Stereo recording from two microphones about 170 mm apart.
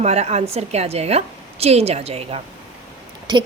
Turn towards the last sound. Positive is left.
turn(degrees=-25)  # may be behind; listen again after turning